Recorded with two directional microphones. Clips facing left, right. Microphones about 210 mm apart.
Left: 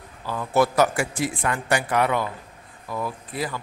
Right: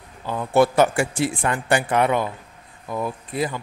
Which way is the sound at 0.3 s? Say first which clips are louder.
Right 3 dB; 25° right (ahead or behind).